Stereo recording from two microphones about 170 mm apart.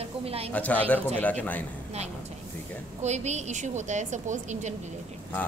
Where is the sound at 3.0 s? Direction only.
40° right (ahead or behind).